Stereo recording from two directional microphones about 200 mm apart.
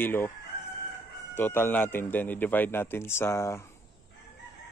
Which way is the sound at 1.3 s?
10° left (ahead or behind).